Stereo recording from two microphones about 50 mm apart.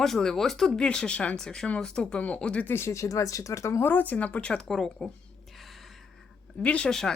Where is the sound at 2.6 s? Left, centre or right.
Left.